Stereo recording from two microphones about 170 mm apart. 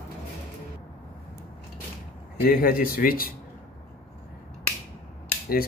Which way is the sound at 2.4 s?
60° left (ahead or behind).